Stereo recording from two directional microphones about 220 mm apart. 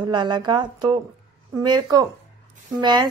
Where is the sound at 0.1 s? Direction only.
20° right (ahead or behind).